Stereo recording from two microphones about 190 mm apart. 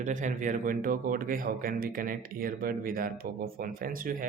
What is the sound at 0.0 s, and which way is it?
A man's voice, 40° right (ahead or behind).